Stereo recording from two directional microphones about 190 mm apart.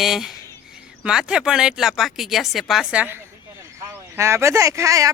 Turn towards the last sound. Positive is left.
turn(degrees=-15)  # may be behind; listen again after turning